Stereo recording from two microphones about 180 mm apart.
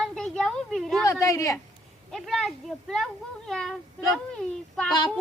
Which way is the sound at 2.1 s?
Centre (ahead or behind).